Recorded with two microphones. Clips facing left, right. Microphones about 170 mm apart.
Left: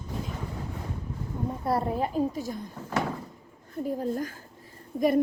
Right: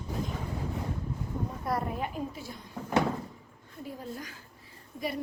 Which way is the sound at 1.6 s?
30° left (ahead or behind).